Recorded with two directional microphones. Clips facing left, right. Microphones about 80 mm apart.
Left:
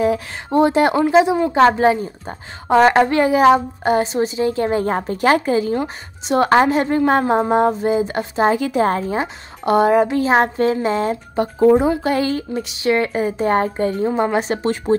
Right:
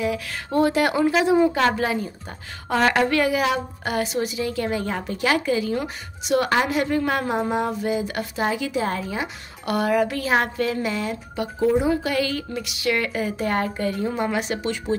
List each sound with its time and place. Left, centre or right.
0.5 s speech: left
1.5 s a woman's voice: left